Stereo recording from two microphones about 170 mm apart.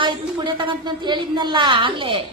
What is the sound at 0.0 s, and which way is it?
A woman's voice, 30° right (ahead or behind).